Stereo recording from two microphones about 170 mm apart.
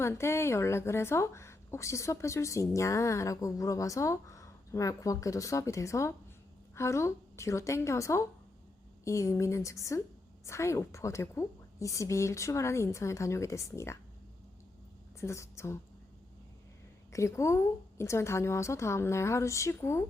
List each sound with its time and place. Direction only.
0.0 s a woman's voice: 15° left (ahead or behind)
15.2 s a woman's voice: 15° left (ahead or behind)
17.1 s a woman's voice: 15° left (ahead or behind)